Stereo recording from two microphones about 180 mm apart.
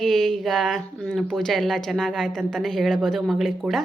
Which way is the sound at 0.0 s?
Centre (ahead or behind).